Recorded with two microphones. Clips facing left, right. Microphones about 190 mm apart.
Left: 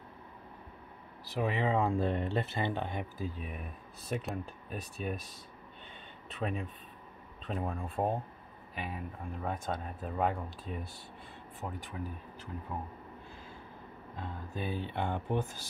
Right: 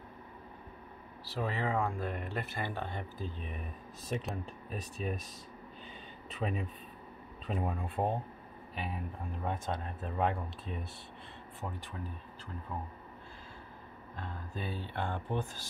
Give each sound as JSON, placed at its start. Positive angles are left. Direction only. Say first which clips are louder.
{"t": 1.3, "sound": "speech", "louder": "left 3 dB", "side_deg": 15}
{"t": 6.3, "sound": "speech", "louder": "even", "side_deg": 0}
{"t": 14.2, "sound": "speech", "louder": "left 3 dB", "side_deg": 15}